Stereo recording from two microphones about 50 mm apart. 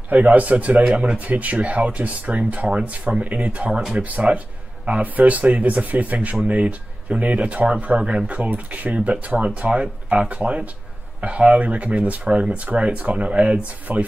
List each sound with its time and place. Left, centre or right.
0.1 s speech: right